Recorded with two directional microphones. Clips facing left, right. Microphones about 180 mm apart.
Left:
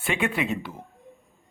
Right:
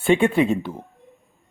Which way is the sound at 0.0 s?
30° right (ahead or behind).